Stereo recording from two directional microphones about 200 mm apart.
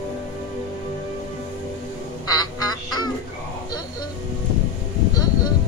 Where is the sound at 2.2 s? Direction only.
20° left (ahead or behind).